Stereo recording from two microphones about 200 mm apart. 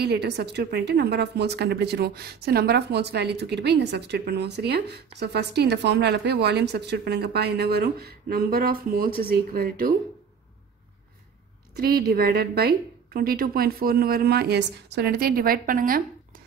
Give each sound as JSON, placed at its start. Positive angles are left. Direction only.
{"t": 0.0, "sound": "a woman's voice", "side_deg": -55}
{"t": 11.7, "sound": "a woman's voice", "side_deg": -50}